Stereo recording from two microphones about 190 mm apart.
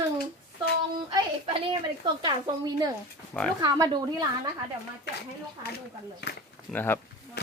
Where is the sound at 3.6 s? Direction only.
20° right (ahead or behind).